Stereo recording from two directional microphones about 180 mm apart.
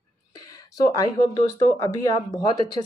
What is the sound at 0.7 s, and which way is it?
Speech, 20° left (ahead or behind).